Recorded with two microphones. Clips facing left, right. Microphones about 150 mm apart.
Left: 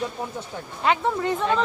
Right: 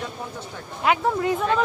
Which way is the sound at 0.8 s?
5° right (ahead or behind).